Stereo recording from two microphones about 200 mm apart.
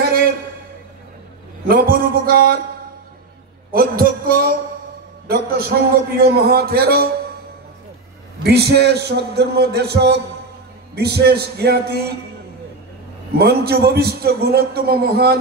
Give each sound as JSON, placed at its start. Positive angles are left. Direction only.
{"t": 0.0, "sound": "a sound", "side_deg": -50}
{"t": 1.7, "sound": "a man's voice", "side_deg": -50}
{"t": 3.7, "sound": "a sound", "side_deg": -45}
{"t": 6.1, "sound": "a man's voice", "side_deg": -50}
{"t": 8.5, "sound": "a man's voice", "side_deg": -55}
{"t": 13.4, "sound": "a man's voice", "side_deg": -50}